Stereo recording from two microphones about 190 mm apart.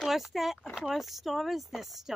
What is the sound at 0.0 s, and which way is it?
Speech, centre (ahead or behind).